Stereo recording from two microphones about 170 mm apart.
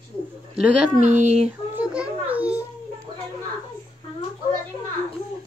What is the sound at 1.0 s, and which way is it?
Speech, 45° right (ahead or behind).